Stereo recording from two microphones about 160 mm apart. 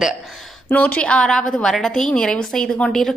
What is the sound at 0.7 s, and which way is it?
A woman's voice, 10° left (ahead or behind).